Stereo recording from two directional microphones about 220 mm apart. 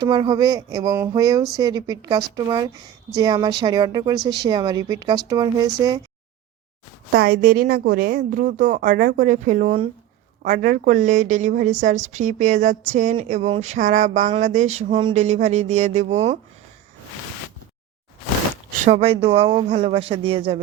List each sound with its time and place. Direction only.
0.0 s speech: 20° right (ahead or behind)
7.1 s speech: 45° right (ahead or behind); by 16.4 s 30° right (ahead or behind)
18.9 s speech: 25° right (ahead or behind)